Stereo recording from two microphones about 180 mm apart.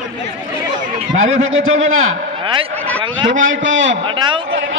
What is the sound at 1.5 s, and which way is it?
Speech, 90° right.